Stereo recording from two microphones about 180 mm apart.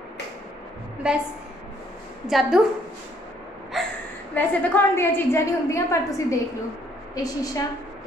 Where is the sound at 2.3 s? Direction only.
Centre (ahead or behind).